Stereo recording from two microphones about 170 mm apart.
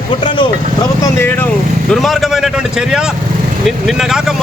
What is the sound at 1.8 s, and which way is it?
A man's voice, centre (ahead or behind).